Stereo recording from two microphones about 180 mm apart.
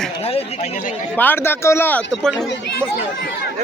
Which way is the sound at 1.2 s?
10° left (ahead or behind).